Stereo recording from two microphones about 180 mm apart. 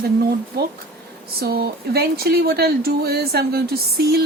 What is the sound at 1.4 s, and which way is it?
Speech, 60° right (ahead or behind).